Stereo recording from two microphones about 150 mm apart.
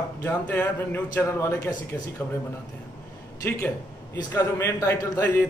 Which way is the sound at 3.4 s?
15° left (ahead or behind).